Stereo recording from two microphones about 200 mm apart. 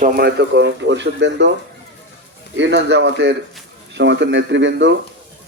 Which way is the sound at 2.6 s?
60° right (ahead or behind).